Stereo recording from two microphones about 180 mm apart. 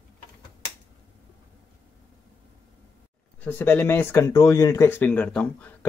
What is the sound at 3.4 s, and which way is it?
Speech, 10° left (ahead or behind).